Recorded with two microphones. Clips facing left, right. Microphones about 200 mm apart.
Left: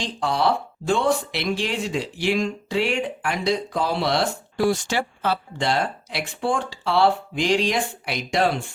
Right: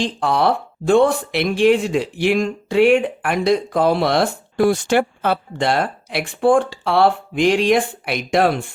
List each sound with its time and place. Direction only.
0.0 s speech: 55° right (ahead or behind)